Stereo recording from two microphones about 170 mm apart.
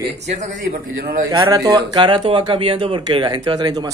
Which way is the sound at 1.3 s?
20° right (ahead or behind).